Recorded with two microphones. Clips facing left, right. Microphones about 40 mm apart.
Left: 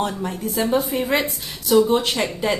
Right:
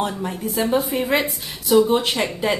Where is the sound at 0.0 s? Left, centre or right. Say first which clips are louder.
Even; centre.